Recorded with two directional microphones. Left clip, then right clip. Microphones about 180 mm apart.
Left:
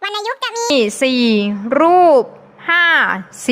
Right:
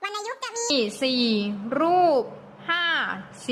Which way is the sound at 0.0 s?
30° left (ahead or behind).